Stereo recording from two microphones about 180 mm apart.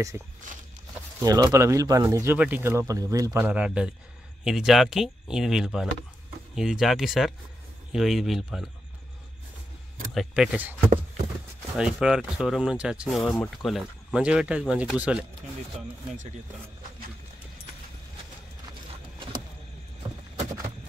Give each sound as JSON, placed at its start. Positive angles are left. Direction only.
{"t": 0.1, "sound": "speech", "side_deg": -15}
{"t": 10.1, "sound": "speech", "side_deg": -5}